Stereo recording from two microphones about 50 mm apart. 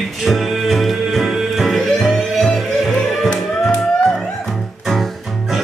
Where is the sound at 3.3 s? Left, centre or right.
Centre.